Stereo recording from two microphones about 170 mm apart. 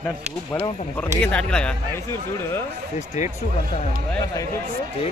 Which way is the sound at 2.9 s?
45° left (ahead or behind).